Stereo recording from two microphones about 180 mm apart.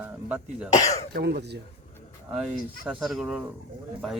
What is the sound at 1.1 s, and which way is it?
Speech, 60° right (ahead or behind).